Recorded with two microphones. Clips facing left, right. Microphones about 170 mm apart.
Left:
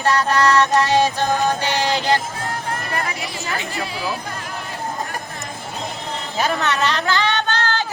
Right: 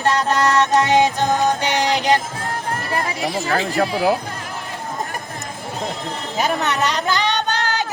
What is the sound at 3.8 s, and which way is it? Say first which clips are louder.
Speech: right 11 dB; 60° right (ahead or behind).